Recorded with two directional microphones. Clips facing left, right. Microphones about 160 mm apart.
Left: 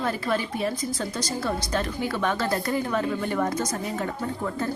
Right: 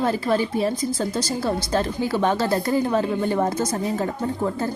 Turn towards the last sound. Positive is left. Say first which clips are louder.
# right 4 dB
turn(degrees=-30)  # may be behind; listen again after turning